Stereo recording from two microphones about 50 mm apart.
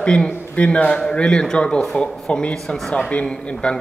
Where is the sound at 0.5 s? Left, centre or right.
Left.